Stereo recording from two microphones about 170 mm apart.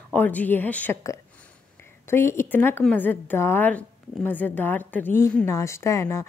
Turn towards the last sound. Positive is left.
turn(degrees=15)  # may be behind; listen again after turning